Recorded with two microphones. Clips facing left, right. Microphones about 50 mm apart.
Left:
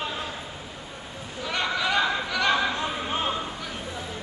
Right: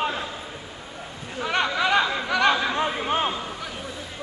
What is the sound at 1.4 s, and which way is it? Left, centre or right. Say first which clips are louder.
Chatter: right 4 dB; right.